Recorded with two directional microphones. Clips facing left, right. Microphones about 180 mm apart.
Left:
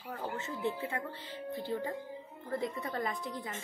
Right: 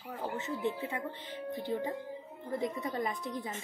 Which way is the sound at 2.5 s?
20° right (ahead or behind).